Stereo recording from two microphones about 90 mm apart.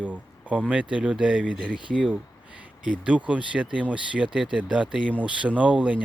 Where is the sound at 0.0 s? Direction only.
15° right (ahead or behind).